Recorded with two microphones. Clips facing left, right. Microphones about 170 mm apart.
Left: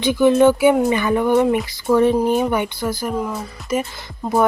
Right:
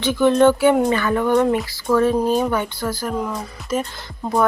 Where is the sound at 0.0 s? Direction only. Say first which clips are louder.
Left 1 dB; 10° left (ahead or behind).